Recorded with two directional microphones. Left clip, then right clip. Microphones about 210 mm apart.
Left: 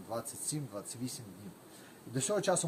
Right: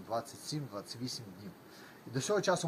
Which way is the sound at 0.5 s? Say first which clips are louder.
Even; 25° left (ahead or behind).